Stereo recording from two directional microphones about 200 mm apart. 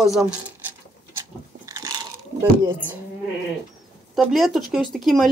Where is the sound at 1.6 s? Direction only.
15° right (ahead or behind).